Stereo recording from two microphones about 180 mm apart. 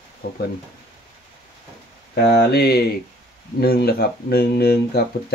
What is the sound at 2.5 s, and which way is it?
Speech, 60° left (ahead or behind).